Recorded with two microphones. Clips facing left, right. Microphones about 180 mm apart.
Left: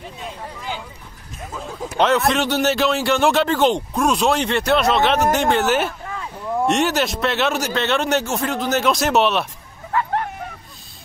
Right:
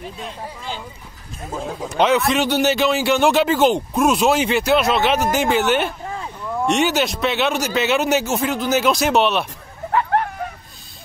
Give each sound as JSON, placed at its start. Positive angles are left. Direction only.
{"t": 1.9, "sound": "a man's voice", "side_deg": 0}